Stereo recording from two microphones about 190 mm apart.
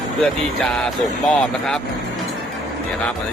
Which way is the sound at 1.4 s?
5° left (ahead or behind).